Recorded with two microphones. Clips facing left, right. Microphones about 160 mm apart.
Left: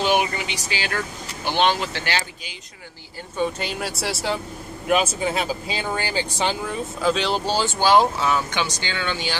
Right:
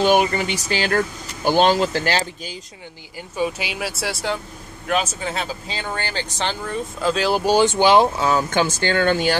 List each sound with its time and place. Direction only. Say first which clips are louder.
0.0 s speech: right 4 dB; 45° right (ahead or behind)
3.3 s speech: right 1 dB; 5° right (ahead or behind)
8.3 s speech: right 4 dB; 40° right (ahead or behind)